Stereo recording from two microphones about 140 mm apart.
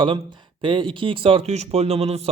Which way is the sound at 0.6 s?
35° right (ahead or behind).